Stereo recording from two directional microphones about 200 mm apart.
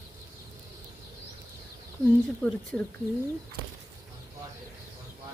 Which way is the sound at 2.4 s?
5° left (ahead or behind).